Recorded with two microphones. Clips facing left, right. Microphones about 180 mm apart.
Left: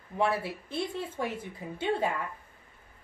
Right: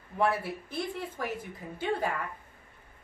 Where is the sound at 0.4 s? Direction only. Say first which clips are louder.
Left 1 dB; 25° left (ahead or behind).